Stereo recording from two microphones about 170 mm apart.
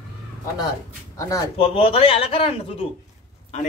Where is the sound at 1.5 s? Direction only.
35° left (ahead or behind).